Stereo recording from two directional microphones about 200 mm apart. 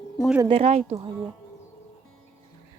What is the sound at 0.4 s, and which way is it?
Speech, 30° right (ahead or behind).